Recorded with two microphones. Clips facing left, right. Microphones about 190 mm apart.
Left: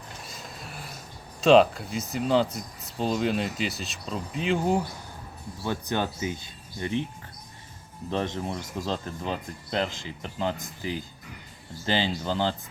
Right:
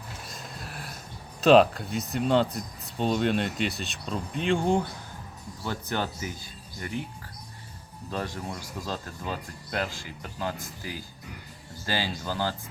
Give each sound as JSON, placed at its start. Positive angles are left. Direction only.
{"t": 0.3, "sound": "a sound", "side_deg": 0}
{"t": 1.4, "sound": "speech", "side_deg": 0}
{"t": 5.6, "sound": "speech", "side_deg": 15}
{"t": 8.1, "sound": "speech", "side_deg": 20}